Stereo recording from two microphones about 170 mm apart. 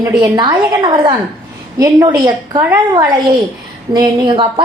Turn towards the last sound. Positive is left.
turn(degrees=-30)  # may be behind; listen again after turning